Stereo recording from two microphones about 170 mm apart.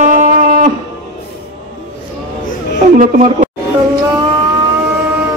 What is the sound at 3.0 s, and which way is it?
Speech, 45° right (ahead or behind).